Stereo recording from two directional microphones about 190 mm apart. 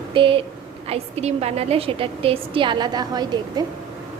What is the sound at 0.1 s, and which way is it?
A woman's voice, 25° right (ahead or behind).